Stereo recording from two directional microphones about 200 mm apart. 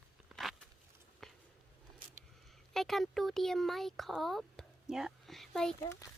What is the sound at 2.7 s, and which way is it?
Speech, centre (ahead or behind).